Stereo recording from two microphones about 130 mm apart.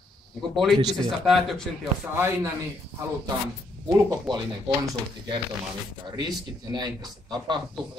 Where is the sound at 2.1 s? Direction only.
20° right (ahead or behind).